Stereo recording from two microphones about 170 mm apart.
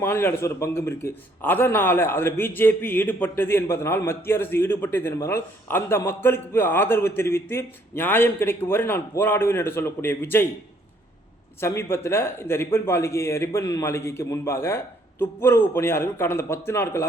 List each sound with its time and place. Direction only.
0.0 s a man's voice: 15° left (ahead or behind)
11.6 s a man's voice: 15° left (ahead or behind)